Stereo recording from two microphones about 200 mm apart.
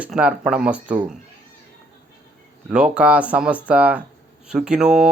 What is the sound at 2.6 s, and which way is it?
Speech, 5° right (ahead or behind).